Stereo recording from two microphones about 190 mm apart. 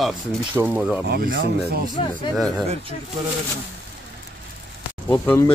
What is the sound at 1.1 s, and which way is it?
Speech, 50° right (ahead or behind).